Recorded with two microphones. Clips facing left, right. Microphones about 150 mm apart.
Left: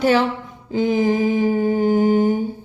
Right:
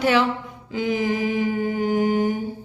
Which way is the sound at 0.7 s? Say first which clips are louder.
Left 5 dB; 40° left (ahead or behind).